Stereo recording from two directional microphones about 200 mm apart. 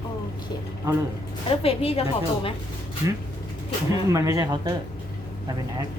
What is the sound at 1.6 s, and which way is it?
Speech, 30° left (ahead or behind).